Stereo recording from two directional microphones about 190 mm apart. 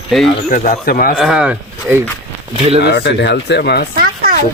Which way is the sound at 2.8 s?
60° left (ahead or behind).